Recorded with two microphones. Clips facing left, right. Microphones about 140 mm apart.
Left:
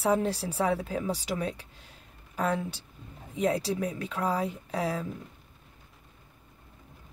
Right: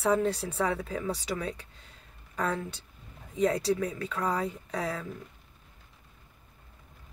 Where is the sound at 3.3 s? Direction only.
10° left (ahead or behind).